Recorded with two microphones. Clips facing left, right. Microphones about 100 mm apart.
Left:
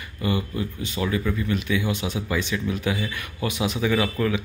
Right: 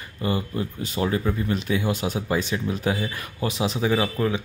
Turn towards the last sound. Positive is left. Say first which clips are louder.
# even
turn(degrees=-30)  # may be behind; listen again after turning